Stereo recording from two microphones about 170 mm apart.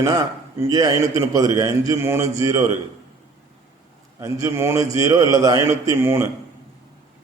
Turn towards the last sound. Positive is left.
turn(degrees=-15)  # may be behind; listen again after turning